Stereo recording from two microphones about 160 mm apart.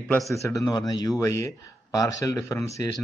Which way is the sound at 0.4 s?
20° left (ahead or behind).